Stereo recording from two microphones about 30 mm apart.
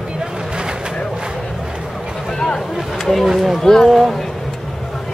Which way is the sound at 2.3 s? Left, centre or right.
Left.